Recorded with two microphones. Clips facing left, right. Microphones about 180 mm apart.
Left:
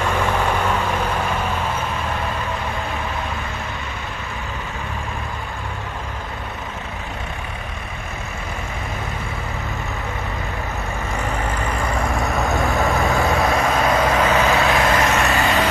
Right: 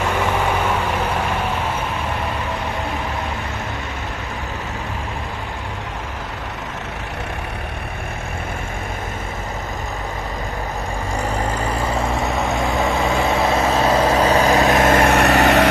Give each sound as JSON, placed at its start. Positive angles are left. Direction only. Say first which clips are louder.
{"t": 0.2, "sound": "vehicle", "louder": "right 1 dB", "side_deg": -10}
{"t": 12.2, "sound": "vehicle", "louder": "even", "side_deg": 0}
{"t": 13.5, "sound": "vehicle", "louder": "right 2 dB", "side_deg": -25}
{"t": 13.9, "sound": "vehicle", "louder": "right 2 dB", "side_deg": -10}
{"t": 14.3, "sound": "vehicle", "louder": "right 3 dB", "side_deg": -40}